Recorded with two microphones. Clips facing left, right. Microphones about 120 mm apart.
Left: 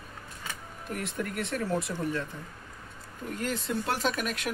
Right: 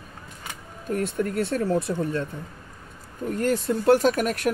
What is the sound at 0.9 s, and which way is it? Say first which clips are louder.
Speech: right 9 dB; 30° right (ahead or behind).